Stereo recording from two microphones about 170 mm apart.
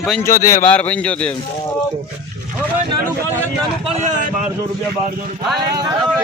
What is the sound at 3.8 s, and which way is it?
Speech, 45° right (ahead or behind).